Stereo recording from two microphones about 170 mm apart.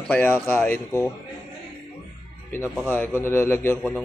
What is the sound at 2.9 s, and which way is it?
Speech, 15° left (ahead or behind).